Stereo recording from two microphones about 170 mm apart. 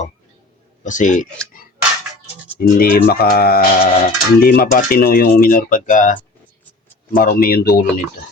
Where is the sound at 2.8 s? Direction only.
60° left (ahead or behind).